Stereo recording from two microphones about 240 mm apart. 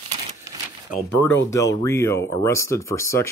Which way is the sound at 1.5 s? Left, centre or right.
Centre.